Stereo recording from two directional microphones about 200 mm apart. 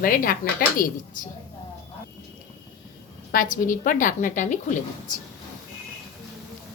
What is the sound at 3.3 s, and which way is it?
A woman's voice, 45° left (ahead or behind).